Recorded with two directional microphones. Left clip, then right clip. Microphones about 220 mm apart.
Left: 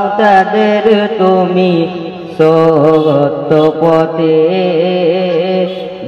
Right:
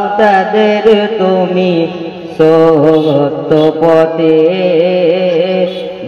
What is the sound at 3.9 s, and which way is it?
Music, 20° left (ahead or behind).